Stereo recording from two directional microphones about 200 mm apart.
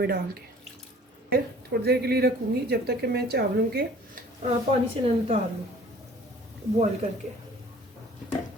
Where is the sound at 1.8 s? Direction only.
55° right (ahead or behind).